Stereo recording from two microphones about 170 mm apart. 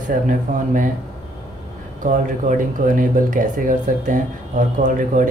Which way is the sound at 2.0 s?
50° right (ahead or behind).